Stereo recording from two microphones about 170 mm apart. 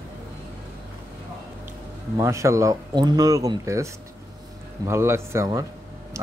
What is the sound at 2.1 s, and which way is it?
Speech, 15° right (ahead or behind).